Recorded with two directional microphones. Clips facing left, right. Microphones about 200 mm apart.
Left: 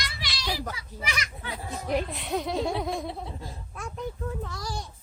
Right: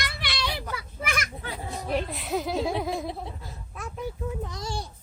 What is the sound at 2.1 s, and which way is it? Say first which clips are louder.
Speech: right 1 dB; centre (ahead or behind).